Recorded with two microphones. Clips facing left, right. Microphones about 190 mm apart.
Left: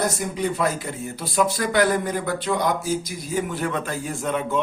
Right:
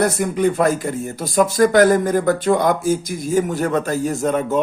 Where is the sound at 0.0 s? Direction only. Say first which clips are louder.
Right 7 dB; 55° right (ahead or behind).